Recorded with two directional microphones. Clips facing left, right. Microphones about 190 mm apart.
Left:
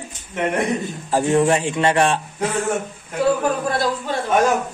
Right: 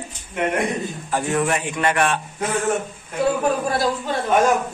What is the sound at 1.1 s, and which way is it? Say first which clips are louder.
A man's voice: left 5 dB; 30° left (ahead or behind).